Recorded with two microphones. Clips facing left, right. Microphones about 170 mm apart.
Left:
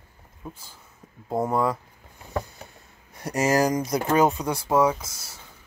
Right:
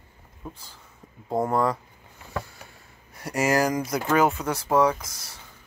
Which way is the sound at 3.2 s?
20° left (ahead or behind).